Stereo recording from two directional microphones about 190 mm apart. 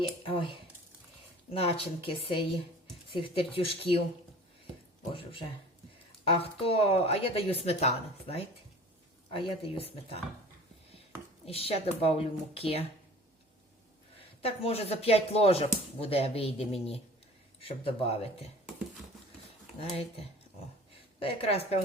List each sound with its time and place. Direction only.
0.0 s speech: 25° left (ahead or behind)
5.1 s speech: 25° left (ahead or behind)
11.4 s speech: 30° left (ahead or behind)
14.2 s speech: 30° left (ahead or behind)
21.2 s speech: 30° left (ahead or behind)